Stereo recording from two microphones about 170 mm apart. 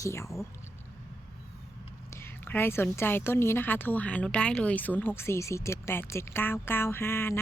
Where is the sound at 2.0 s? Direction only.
15° left (ahead or behind).